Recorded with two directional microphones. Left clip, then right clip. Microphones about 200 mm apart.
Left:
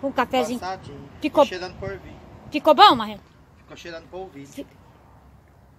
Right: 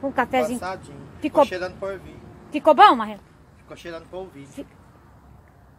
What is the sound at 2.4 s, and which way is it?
Speech, 20° left (ahead or behind).